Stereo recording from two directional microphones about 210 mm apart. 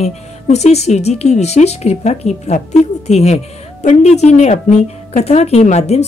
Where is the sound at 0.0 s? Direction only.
30° left (ahead or behind).